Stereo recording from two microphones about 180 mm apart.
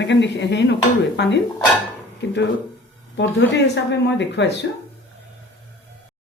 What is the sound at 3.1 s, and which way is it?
Speech, 85° left.